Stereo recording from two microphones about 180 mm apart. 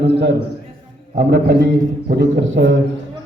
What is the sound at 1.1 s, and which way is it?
A man's voice, 60° right (ahead or behind).